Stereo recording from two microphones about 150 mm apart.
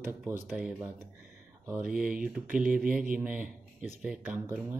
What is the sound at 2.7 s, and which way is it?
Speech, 65° right (ahead or behind).